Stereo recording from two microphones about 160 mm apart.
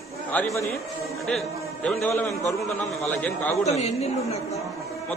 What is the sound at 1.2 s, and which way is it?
A man's voice, centre (ahead or behind).